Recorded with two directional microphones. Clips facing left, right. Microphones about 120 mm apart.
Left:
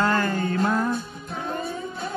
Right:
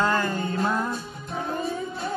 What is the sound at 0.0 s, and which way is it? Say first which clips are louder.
Music: left 1 dB; 15° right (ahead or behind).